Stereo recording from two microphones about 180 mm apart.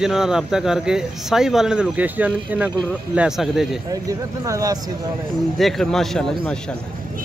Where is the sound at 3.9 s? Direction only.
20° right (ahead or behind).